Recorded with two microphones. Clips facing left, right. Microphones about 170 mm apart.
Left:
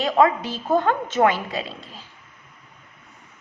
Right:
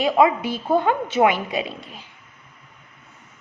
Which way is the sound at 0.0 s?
10° right (ahead or behind).